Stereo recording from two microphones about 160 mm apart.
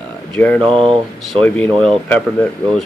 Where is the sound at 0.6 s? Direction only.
35° right (ahead or behind).